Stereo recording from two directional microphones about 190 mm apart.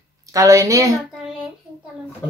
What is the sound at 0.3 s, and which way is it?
Speech, 15° right (ahead or behind).